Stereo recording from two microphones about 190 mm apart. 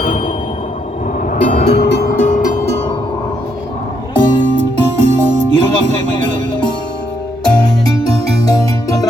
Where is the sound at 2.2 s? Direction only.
45° left (ahead or behind).